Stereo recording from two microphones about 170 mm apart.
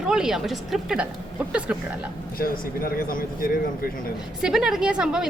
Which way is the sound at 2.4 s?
60° left (ahead or behind).